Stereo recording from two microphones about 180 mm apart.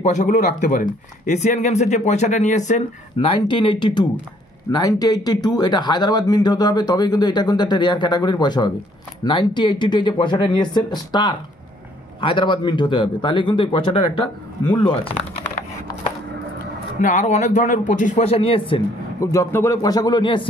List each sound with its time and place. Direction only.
0.0 s speech: 40° left (ahead or behind)
3.2 s speech: 25° left (ahead or behind)
17.0 s speech: 45° left (ahead or behind)
19.3 s speech: 15° left (ahead or behind)